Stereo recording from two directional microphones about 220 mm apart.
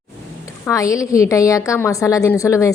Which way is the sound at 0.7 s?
15° left (ahead or behind).